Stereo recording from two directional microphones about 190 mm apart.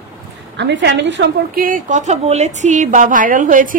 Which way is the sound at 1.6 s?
45° right (ahead or behind).